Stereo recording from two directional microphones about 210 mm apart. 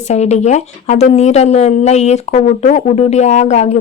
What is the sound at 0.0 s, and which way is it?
Speech, 30° left (ahead or behind).